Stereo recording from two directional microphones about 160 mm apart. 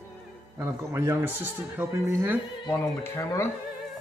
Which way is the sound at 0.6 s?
15° right (ahead or behind).